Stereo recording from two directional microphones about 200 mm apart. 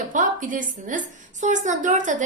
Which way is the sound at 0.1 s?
40° right (ahead or behind).